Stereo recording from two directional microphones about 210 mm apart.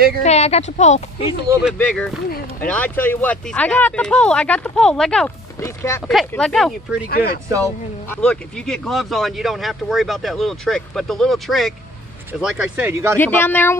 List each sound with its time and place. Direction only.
0.2 s a woman's voice: 30° left (ahead or behind)
1.8 s speech: 5° left (ahead or behind)
2.2 s speech: 45° left (ahead or behind)
2.7 s speech: 10° left (ahead or behind)
6.0 s speech: centre (ahead or behind)
7.1 s speech: 45° left (ahead or behind)
7.6 s speech: 5° left (ahead or behind); by 13.2 s 15° right (ahead or behind)
13.2 s speech: 10° left (ahead or behind)